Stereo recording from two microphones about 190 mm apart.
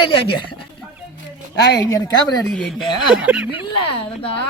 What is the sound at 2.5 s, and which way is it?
Speech, centre (ahead or behind).